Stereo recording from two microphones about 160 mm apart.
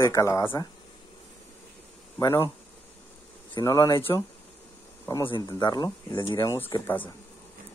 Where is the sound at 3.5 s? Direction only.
20° left (ahead or behind).